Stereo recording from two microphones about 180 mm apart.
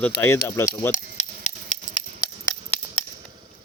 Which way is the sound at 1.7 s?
40° left (ahead or behind).